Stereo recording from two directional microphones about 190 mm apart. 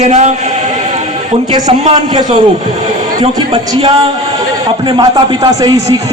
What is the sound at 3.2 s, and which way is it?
A man's voice, 30° right (ahead or behind).